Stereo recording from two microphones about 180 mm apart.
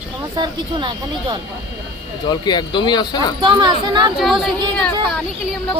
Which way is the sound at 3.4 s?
25° right (ahead or behind).